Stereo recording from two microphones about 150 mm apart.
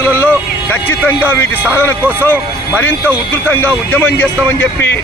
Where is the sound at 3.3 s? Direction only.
15° left (ahead or behind).